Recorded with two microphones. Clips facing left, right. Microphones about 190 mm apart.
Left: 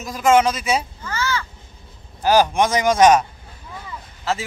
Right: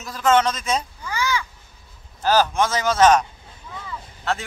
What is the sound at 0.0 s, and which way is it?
Speech, 10° left (ahead or behind).